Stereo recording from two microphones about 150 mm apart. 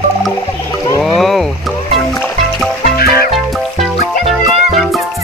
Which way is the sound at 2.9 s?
90° left.